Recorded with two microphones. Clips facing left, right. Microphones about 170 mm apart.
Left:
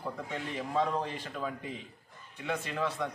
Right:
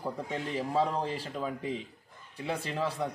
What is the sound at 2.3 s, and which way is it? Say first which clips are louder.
Speech: right 1 dB; 30° right (ahead or behind).